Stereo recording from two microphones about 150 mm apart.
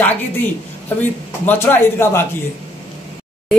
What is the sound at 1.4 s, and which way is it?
Speech, 15° left (ahead or behind).